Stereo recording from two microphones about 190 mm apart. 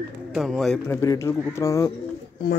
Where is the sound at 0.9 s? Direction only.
15° left (ahead or behind).